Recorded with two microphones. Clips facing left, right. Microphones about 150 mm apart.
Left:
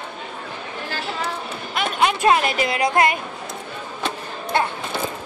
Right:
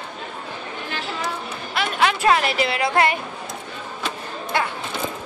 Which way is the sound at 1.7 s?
20° left (ahead or behind).